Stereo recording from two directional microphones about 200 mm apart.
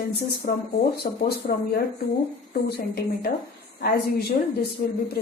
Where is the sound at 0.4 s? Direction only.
40° left (ahead or behind).